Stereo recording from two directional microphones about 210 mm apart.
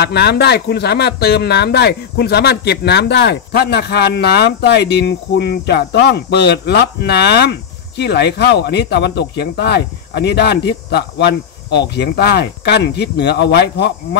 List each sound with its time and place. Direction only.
0.0 s speech: 50° left (ahead or behind)